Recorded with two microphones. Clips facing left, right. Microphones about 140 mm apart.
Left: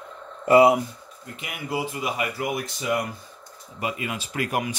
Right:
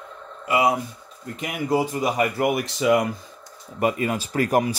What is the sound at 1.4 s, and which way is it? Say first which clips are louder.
Speech: right 7 dB; 40° right (ahead or behind).